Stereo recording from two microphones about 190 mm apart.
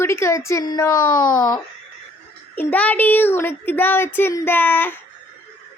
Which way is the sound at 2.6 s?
5° left (ahead or behind).